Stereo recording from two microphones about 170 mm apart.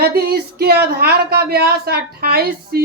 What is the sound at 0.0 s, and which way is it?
A man's voice, 65° right (ahead or behind).